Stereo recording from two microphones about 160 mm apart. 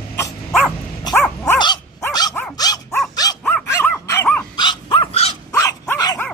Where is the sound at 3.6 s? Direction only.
15° left (ahead or behind).